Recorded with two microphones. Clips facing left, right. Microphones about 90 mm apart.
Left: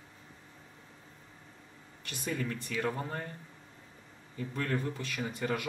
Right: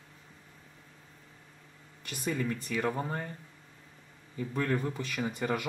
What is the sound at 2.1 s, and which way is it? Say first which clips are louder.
Speech: right 3 dB; 10° right (ahead or behind).